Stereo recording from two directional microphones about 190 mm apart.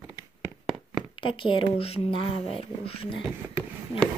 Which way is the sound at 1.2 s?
25° left (ahead or behind).